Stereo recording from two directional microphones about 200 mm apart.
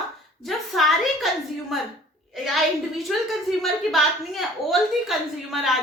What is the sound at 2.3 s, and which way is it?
A woman's voice, centre (ahead or behind).